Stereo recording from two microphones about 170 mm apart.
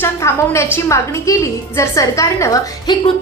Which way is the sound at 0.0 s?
15° left (ahead or behind).